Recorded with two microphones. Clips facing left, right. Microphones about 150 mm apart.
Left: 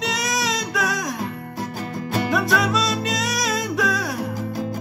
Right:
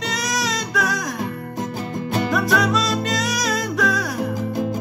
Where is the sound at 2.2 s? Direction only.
Centre (ahead or behind).